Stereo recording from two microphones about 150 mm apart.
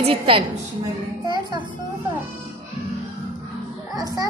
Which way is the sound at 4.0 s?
25° right (ahead or behind).